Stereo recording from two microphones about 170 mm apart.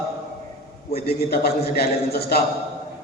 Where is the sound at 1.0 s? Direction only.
65° left (ahead or behind).